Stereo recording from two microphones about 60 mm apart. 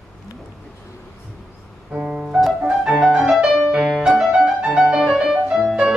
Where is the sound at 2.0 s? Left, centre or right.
Centre; by 5.4 s right.